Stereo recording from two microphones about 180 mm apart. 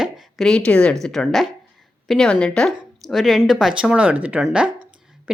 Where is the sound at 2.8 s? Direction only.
Centre (ahead or behind).